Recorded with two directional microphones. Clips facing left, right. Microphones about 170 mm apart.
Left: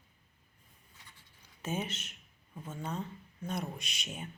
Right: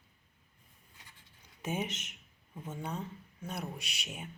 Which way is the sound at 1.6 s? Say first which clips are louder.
Right 1 dB; 15° right (ahead or behind).